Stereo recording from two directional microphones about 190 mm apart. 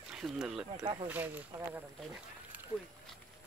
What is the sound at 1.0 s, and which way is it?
Speech, 10° right (ahead or behind).